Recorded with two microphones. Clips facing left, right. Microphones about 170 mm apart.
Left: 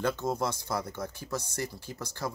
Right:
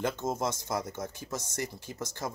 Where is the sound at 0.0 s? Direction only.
20° right (ahead or behind).